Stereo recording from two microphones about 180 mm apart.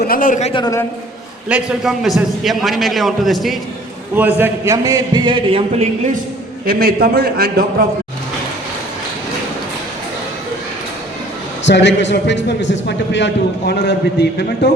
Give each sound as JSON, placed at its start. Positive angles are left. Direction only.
{"t": 0.0, "sound": "a man's voice", "side_deg": 50}
{"t": 0.5, "sound": "a man's voice", "side_deg": 20}
{"t": 1.5, "sound": "a man's voice", "side_deg": -5}
{"t": 4.1, "sound": "a man's voice", "side_deg": -10}
{"t": 6.7, "sound": "a man's voice", "side_deg": -55}
{"t": 11.6, "sound": "a man's voice", "side_deg": 80}